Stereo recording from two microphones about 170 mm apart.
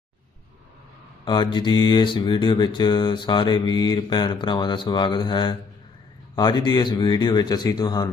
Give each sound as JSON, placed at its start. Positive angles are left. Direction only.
{"t": 1.2, "sound": "mantra", "side_deg": 30}